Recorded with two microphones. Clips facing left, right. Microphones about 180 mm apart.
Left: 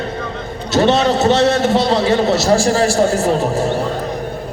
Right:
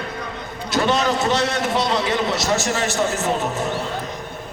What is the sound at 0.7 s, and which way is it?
A man's voice, 30° left (ahead or behind).